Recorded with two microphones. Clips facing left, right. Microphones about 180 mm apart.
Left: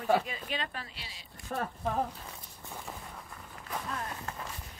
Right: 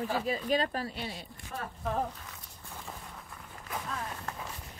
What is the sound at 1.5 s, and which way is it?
Speech, 50° left (ahead or behind).